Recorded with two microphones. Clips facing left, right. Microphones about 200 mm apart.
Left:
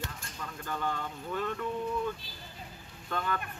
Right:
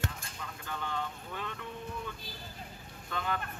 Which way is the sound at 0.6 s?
45° left (ahead or behind).